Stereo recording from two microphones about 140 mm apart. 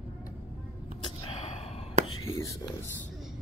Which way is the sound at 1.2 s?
45° left (ahead or behind).